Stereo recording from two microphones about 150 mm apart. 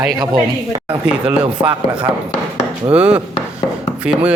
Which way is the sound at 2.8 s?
25° right (ahead or behind).